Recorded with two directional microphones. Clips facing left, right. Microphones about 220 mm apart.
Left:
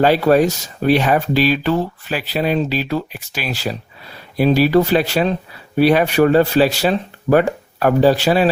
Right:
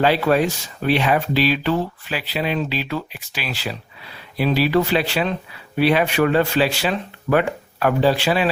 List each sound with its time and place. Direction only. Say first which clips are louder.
0.0 s speech: left 4 dB; 40° left (ahead or behind)